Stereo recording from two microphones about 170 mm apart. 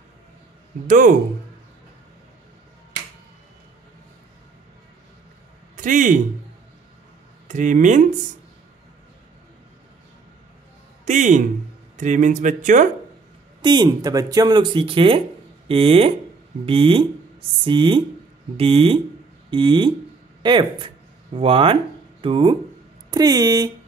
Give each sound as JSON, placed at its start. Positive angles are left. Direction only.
{"t": 0.8, "sound": "speech", "side_deg": -50}
{"t": 5.8, "sound": "a man's voice", "side_deg": -50}
{"t": 7.4, "sound": "speech", "side_deg": -45}
{"t": 11.1, "sound": "speech", "side_deg": -45}
{"t": 13.6, "sound": "speech", "side_deg": -25}